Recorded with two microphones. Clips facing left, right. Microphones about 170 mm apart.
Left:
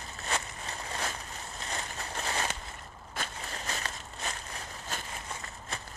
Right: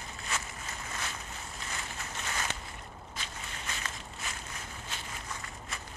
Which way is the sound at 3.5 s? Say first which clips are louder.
Left 3 dB; 40° left (ahead or behind).